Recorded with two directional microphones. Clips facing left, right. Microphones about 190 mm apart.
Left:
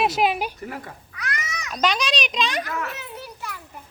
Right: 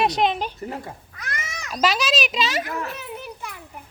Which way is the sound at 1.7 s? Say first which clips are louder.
Right 2 dB; 5° right (ahead or behind).